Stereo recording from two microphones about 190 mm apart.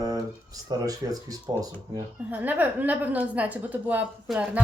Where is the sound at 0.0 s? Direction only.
20° right (ahead or behind).